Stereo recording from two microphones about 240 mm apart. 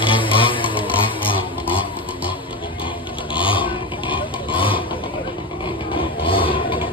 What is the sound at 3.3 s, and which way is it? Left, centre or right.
Vehicle, left.